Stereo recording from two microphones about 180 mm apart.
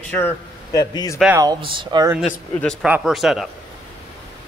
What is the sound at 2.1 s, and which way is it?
A man's voice, centre (ahead or behind).